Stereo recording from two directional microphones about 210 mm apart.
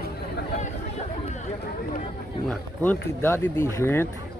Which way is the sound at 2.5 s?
10° left (ahead or behind).